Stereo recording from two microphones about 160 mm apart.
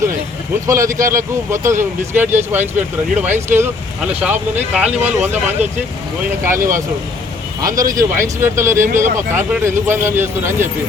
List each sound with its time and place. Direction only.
0.7 s speech: 20° right (ahead or behind)